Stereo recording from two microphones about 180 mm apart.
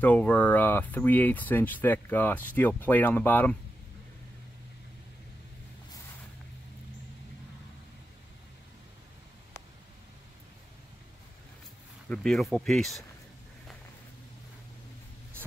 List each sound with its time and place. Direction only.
0.0 s speech: 10° left (ahead or behind)
12.1 s speech: 5° left (ahead or behind)